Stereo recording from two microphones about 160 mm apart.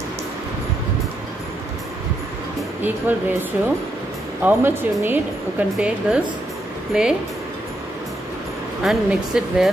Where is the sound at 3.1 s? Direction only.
10° right (ahead or behind).